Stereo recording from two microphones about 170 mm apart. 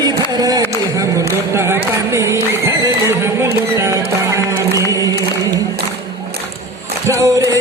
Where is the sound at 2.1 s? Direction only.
15° right (ahead or behind).